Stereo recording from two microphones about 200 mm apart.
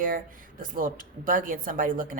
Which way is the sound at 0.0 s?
45° right (ahead or behind).